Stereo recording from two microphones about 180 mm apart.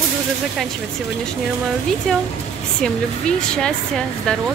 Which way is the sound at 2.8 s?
5° left (ahead or behind).